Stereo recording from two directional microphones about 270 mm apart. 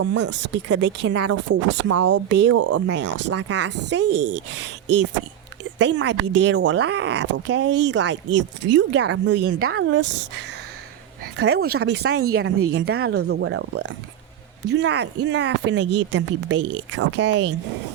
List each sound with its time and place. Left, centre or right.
0.0 s speech: right
0.3 s speech: right
1.9 s speech: right
2.1 s speech: right
2.5 s speech: right
3.3 s speech: right
5.8 s speech: right
11.3 s speech: right
12.2 s speech: right
12.7 s speech: right